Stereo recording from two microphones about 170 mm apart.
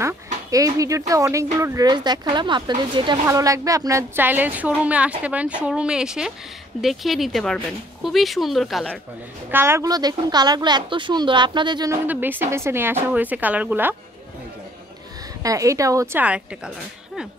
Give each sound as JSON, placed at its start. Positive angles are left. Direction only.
{"t": 0.5, "sound": "a woman's voice", "side_deg": -20}
{"t": 9.5, "sound": "speech", "side_deg": -15}
{"t": 12.1, "sound": "speech", "side_deg": -10}
{"t": 15.4, "sound": "speech", "side_deg": -20}